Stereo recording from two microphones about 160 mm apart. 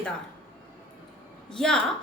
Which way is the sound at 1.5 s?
5° left (ahead or behind).